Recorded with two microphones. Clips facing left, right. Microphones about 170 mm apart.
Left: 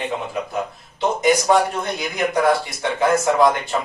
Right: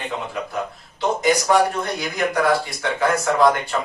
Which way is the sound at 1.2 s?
20° left (ahead or behind).